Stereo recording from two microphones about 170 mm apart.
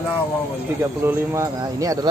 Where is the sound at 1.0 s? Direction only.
15° right (ahead or behind).